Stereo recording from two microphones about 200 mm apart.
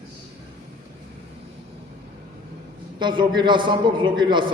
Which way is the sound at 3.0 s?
25° right (ahead or behind).